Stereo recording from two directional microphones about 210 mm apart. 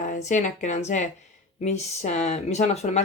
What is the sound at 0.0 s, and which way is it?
A woman's voice, 35° left (ahead or behind).